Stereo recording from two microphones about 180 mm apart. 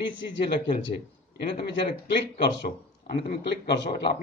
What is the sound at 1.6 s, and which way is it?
A man's voice, 65° left (ahead or behind).